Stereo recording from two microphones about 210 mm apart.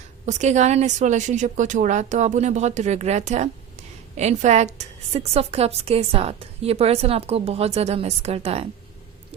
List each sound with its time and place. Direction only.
0.3 s a woman's voice: 35° right (ahead or behind)